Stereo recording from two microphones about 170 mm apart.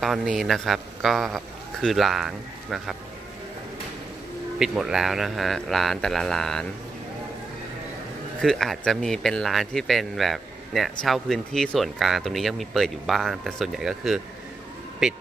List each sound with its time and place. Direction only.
0.0 s a man's voice: centre (ahead or behind)
4.6 s speech: 5° right (ahead or behind)
8.4 s speech: centre (ahead or behind)